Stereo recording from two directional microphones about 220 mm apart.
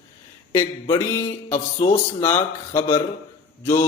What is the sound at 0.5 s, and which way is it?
Mantra, 10° left (ahead or behind).